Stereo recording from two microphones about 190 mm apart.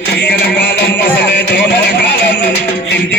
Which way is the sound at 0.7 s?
60° left (ahead or behind).